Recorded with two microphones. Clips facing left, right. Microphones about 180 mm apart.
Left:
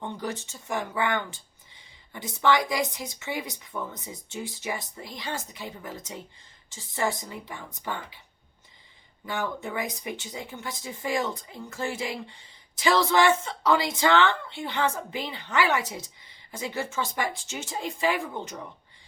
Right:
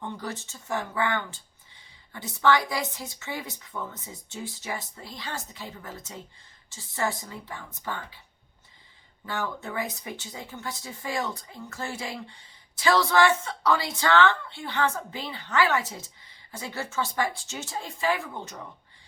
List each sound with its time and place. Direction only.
0.2 s a woman's voice: 15° left (ahead or behind)
9.2 s a woman's voice: 15° left (ahead or behind)